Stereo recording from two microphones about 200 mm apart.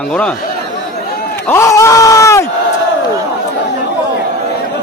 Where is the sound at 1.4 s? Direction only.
15° left (ahead or behind).